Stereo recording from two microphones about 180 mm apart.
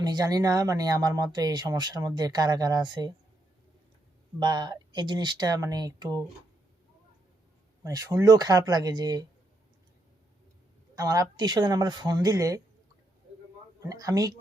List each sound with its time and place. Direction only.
0.0 s speech: 20° right (ahead or behind)
4.4 s speech: 25° right (ahead or behind)
7.9 s speech: 15° right (ahead or behind)
10.9 s speech: 20° right (ahead or behind)
13.8 s speech: 20° right (ahead or behind)